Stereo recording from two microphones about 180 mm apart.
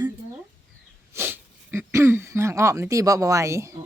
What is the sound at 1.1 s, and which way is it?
A woman's voice, 10° right (ahead or behind).